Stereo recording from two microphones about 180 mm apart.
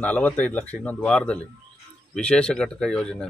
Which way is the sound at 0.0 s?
10° left (ahead or behind).